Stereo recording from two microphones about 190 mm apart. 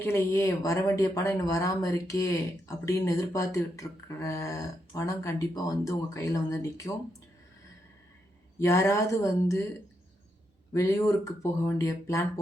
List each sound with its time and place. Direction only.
0.0 s speech: 15° left (ahead or behind)
8.5 s speech: 15° left (ahead or behind)
10.8 s speech: 15° left (ahead or behind)